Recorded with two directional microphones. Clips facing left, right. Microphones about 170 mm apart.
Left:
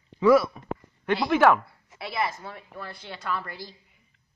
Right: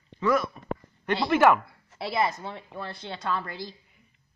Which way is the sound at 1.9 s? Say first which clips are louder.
Right 3 dB; 25° right (ahead or behind).